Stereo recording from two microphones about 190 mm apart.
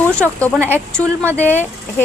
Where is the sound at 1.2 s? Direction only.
10° right (ahead or behind).